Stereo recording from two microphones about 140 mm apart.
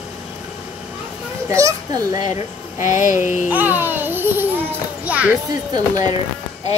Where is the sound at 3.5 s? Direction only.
15° right (ahead or behind).